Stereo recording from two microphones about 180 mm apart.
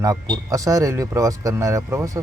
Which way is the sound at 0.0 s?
20° right (ahead or behind).